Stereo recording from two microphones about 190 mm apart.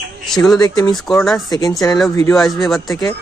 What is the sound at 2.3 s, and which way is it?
Speech, centre (ahead or behind).